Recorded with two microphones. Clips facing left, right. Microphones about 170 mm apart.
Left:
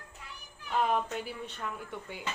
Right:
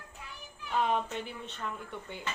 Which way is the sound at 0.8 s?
5° left (ahead or behind).